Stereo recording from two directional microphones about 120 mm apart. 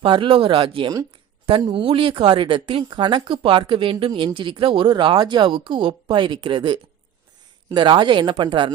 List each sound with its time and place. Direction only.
0.0 s speech: 45° right (ahead or behind)